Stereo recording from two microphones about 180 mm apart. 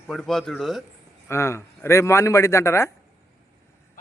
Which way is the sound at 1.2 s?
15° left (ahead or behind).